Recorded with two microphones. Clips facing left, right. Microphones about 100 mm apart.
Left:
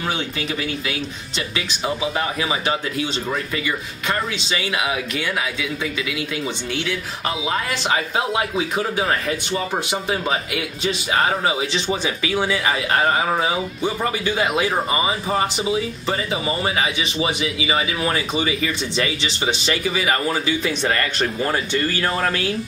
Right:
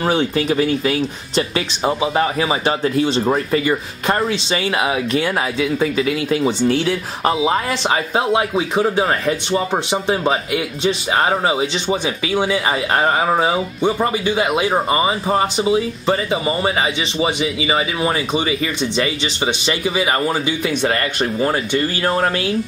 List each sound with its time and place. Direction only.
0.0 s speech: 40° right (ahead or behind)
11.6 s speech: 20° right (ahead or behind)
14.2 s speech: 20° right (ahead or behind)
14.7 s speech: 35° right (ahead or behind); by 21.5 s 15° right (ahead or behind)